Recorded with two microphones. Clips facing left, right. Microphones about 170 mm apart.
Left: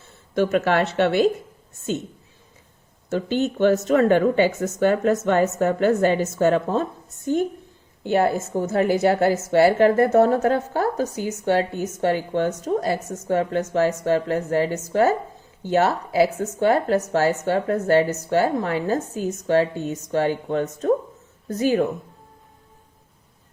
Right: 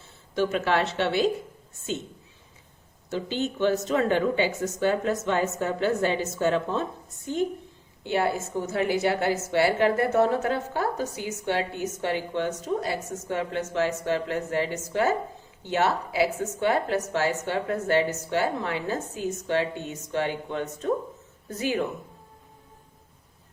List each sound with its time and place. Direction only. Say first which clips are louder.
0.3 s a woman's voice: left 5 dB; 50° left (ahead or behind)
3.1 s a woman's voice: left 6 dB; 50° left (ahead or behind)
8.0 s a woman's voice: left 6 dB; 45° left (ahead or behind)